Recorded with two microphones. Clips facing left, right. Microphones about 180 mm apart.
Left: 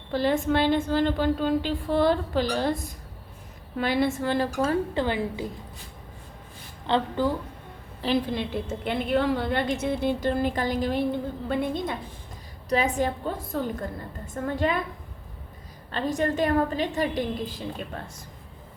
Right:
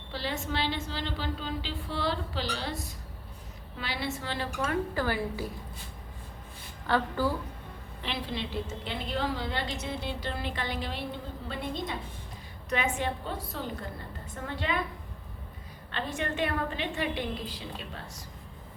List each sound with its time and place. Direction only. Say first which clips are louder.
0.1 s a woman's voice: left 11 dB; 50° left (ahead or behind)
4.6 s a woman's voice: left 5 dB; 25° left (ahead or behind)
6.8 s a woman's voice: left 4 dB; 20° left (ahead or behind)
8.0 s a woman's voice: left 9 dB; 45° left (ahead or behind)
12.7 s a woman's voice: left 6 dB; 40° left (ahead or behind)
15.9 s a woman's voice: left 8 dB; 40° left (ahead or behind)